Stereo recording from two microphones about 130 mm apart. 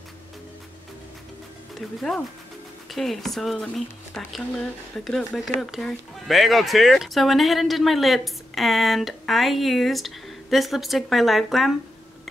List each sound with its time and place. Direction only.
1.8 s speech: centre (ahead or behind)